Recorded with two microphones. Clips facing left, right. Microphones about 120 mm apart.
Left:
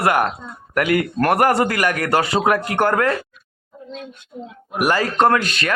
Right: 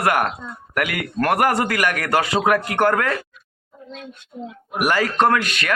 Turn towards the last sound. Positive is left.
turn(degrees=30)  # may be behind; listen again after turning